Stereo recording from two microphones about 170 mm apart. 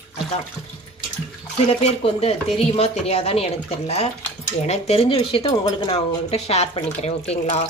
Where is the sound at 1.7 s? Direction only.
35° left (ahead or behind).